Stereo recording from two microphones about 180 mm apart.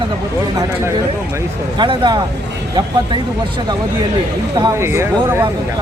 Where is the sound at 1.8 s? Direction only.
25° right (ahead or behind).